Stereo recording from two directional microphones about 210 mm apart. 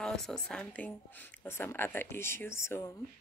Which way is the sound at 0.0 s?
Centre (ahead or behind).